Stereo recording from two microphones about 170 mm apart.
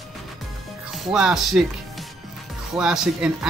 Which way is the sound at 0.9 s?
Centre (ahead or behind).